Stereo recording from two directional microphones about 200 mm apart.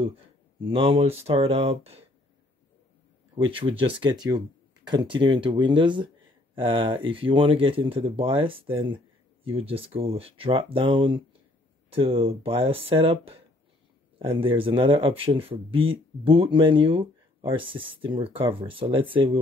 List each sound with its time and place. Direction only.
0.6 s speech: 25° right (ahead or behind)
3.3 s speech: 25° right (ahead or behind)